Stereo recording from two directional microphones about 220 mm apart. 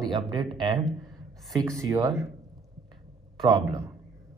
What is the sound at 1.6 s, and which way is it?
Speech, 15° right (ahead or behind).